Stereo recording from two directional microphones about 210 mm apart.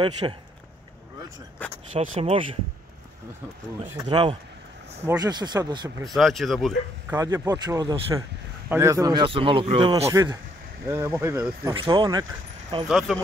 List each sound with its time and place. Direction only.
0.0 s speech: 20° right (ahead or behind)
1.9 s speech: 30° right (ahead or behind)
3.8 s speech: 20° right (ahead or behind)
6.0 s speech: centre (ahead or behind)
7.2 s speech: 15° right (ahead or behind)
11.7 s speech: 25° right (ahead or behind)
12.8 s speech: centre (ahead or behind)